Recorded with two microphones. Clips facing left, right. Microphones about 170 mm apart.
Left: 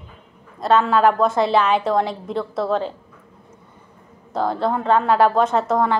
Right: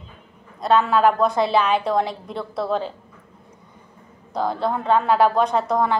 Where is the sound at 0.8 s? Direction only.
25° left (ahead or behind).